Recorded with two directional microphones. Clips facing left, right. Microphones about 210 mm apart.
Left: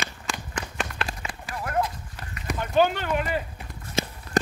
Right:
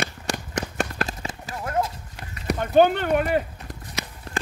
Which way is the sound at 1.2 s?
25° right (ahead or behind).